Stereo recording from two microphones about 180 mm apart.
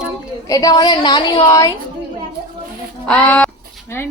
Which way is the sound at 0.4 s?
20° left (ahead or behind).